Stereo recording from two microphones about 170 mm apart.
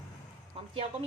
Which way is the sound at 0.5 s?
35° right (ahead or behind).